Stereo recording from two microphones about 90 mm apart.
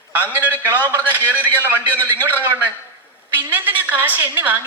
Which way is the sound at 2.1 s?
20° right (ahead or behind).